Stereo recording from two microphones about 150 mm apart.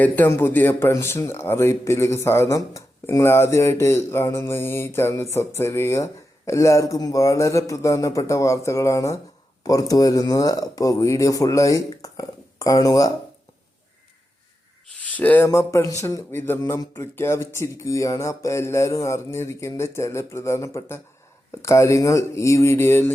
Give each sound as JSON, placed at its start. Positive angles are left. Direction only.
{"t": 0.0, "sound": "speech", "side_deg": 15}
{"t": 14.9, "sound": "a sound", "side_deg": 10}
{"t": 15.4, "sound": "speech", "side_deg": 20}